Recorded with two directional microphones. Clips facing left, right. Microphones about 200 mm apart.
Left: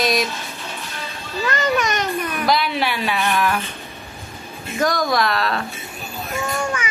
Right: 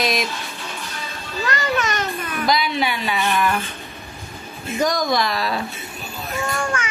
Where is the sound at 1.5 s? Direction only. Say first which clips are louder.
Left 2 dB; 15° left (ahead or behind).